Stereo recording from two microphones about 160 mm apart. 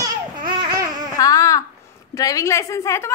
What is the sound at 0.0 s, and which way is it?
Babbling, 25° right (ahead or behind).